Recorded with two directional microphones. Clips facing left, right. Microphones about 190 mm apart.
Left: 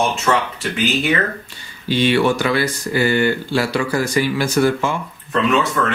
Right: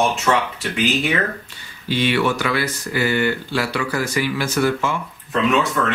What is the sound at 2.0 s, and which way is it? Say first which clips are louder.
Speech: left 4 dB; 30° left (ahead or behind).